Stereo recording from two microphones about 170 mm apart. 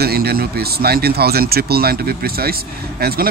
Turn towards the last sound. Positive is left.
turn(degrees=-65)  # may be behind; listen again after turning